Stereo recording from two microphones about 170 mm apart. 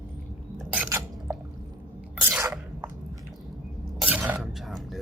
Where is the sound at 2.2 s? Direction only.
10° right (ahead or behind).